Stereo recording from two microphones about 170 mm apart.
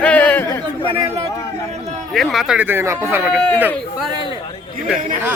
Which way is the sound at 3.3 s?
5° left (ahead or behind).